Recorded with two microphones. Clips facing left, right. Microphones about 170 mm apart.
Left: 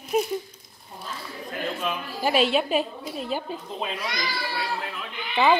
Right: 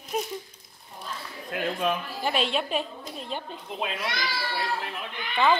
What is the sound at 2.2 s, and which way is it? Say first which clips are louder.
A woman's voice: left 6 dB; 5° left (ahead or behind).